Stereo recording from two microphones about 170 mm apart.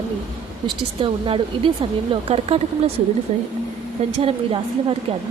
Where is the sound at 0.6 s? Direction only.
30° right (ahead or behind).